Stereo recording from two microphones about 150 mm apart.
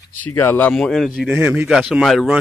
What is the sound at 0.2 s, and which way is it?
Speech, 15° left (ahead or behind).